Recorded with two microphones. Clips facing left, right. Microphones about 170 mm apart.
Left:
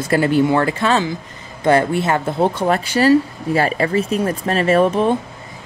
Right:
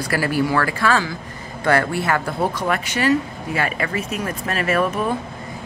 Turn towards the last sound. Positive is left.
turn(degrees=30)  # may be behind; listen again after turning